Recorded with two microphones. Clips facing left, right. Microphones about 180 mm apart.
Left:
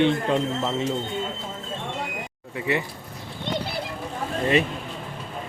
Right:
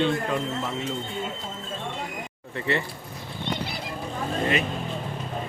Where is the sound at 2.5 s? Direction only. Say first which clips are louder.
Left 1 dB; 10° left (ahead or behind).